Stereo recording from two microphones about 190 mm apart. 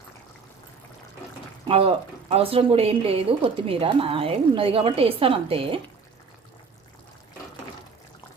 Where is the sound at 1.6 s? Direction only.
30° right (ahead or behind).